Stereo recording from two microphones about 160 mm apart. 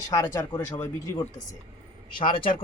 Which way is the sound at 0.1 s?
20° left (ahead or behind).